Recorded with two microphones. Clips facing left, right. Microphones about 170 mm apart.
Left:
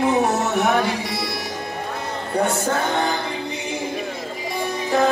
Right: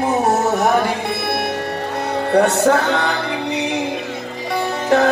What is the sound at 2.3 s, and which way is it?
Music, 70° right (ahead or behind).